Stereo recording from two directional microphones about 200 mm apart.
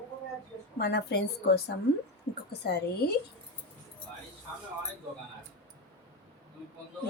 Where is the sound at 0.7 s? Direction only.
55° left (ahead or behind).